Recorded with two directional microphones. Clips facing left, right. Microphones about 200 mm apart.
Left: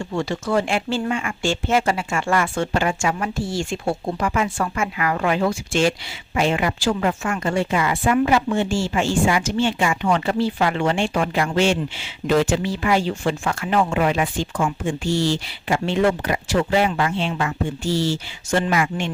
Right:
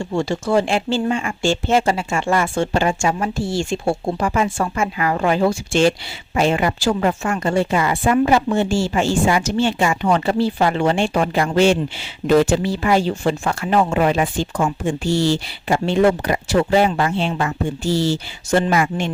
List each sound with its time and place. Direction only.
0.0 s a woman's voice: 30° right (ahead or behind)